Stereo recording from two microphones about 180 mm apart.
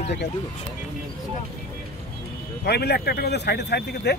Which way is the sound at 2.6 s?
65° left (ahead or behind).